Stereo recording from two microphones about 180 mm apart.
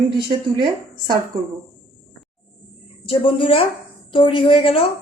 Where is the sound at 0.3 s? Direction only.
25° right (ahead or behind).